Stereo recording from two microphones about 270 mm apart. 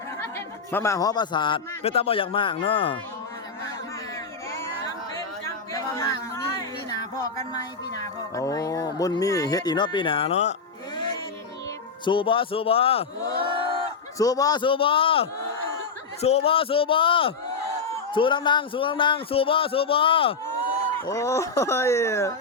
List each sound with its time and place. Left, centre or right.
0.2 s a man's voice: centre
5.7 s a sound: centre
8.4 s speech: centre
12.0 s speech: centre